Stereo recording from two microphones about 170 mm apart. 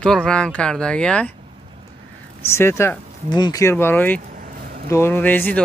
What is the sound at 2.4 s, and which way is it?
Speech, 15° left (ahead or behind).